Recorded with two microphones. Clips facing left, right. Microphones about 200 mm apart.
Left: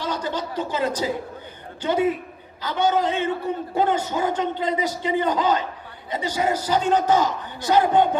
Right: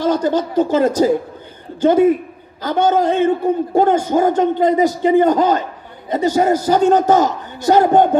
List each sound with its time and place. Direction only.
0.0 s a man's voice: 45° right (ahead or behind)